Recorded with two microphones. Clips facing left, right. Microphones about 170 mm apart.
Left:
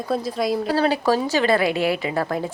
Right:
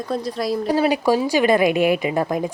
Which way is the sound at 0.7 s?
10° right (ahead or behind).